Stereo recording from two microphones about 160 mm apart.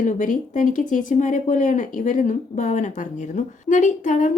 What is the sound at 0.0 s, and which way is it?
A woman's voice, 50° left (ahead or behind).